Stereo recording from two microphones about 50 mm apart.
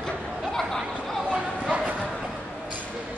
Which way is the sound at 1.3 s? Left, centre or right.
Right.